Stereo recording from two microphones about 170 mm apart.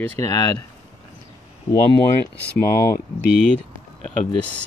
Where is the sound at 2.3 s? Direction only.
15° left (ahead or behind).